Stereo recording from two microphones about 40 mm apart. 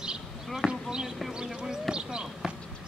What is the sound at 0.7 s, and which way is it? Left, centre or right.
Basketball bounce, centre.